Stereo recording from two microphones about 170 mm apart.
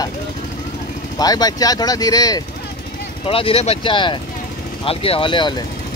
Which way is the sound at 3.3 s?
35° left (ahead or behind).